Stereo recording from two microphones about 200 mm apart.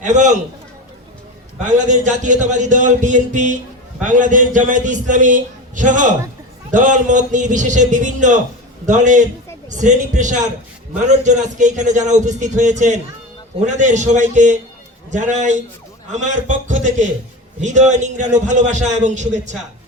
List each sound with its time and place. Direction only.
0.0 s a man's voice: 35° right (ahead or behind)
1.6 s a man's voice: 40° right (ahead or behind)